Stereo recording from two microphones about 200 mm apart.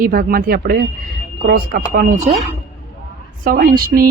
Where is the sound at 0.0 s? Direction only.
45° right (ahead or behind).